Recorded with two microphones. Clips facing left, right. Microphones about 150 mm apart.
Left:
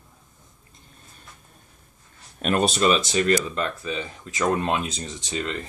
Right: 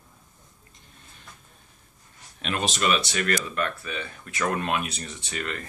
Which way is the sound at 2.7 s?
30° left (ahead or behind).